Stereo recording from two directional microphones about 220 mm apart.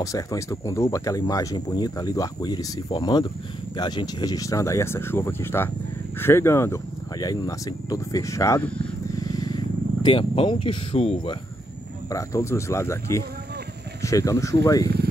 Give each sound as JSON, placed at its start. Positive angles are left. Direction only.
{"t": 0.0, "sound": "speech", "side_deg": 15}
{"t": 12.1, "sound": "speech", "side_deg": 15}